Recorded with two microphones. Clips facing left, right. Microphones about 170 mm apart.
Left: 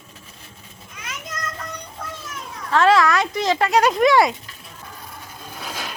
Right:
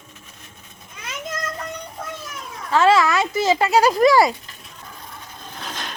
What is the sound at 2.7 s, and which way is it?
Speech, centre (ahead or behind).